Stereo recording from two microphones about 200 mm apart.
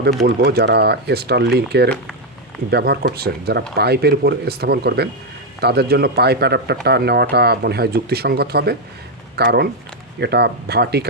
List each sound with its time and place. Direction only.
0.3 s speech: 50° right (ahead or behind)